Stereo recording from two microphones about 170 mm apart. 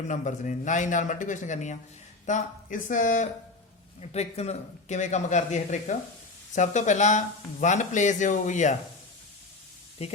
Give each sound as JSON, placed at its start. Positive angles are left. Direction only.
{"t": 0.1, "sound": "a man's voice", "side_deg": 45}
{"t": 4.0, "sound": "a man's voice", "side_deg": 40}
{"t": 10.0, "sound": "speech", "side_deg": 35}